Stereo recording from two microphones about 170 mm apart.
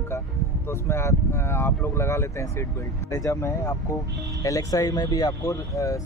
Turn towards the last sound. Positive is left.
turn(degrees=20)  # may be behind; listen again after turning